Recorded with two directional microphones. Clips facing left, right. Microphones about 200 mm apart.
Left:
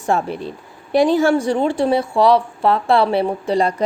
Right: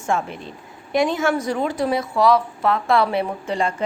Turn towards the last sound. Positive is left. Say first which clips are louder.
# left 5 dB
turn(degrees=35)  # may be behind; listen again after turning